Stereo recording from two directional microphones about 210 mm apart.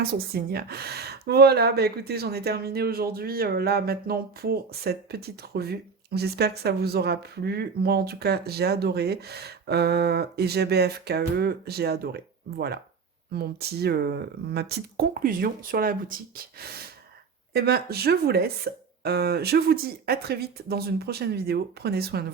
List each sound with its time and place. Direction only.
0.3 s speech: 45° right (ahead or behind)